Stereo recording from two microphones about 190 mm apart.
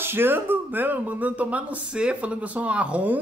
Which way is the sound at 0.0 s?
10° right (ahead or behind).